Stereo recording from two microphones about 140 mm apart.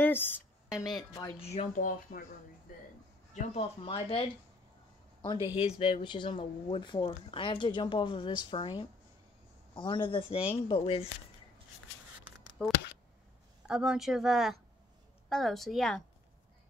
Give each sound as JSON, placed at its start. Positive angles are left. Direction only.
{"t": 0.0, "sound": "a sound", "side_deg": 15}
{"t": 1.4, "sound": "speech", "side_deg": 45}
{"t": 1.8, "sound": "speech", "side_deg": 75}
{"t": 3.3, "sound": "speech", "side_deg": 45}
{"t": 12.6, "sound": "a sound", "side_deg": 5}
{"t": 13.7, "sound": "speech", "side_deg": -5}